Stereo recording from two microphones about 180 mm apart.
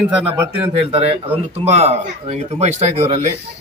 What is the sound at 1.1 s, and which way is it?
A man's voice, 35° right (ahead or behind).